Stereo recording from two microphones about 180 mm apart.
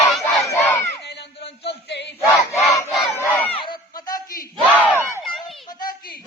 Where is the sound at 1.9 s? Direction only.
70° left (ahead or behind).